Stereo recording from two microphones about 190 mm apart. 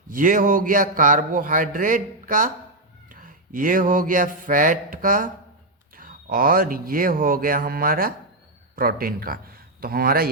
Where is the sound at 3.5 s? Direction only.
45° right (ahead or behind).